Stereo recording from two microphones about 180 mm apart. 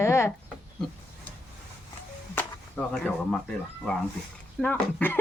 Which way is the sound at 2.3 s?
10° left (ahead or behind).